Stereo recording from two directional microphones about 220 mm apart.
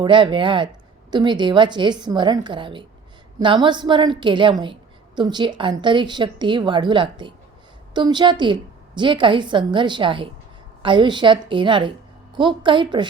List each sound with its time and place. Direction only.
0.0 s a woman's voice: 20° right (ahead or behind)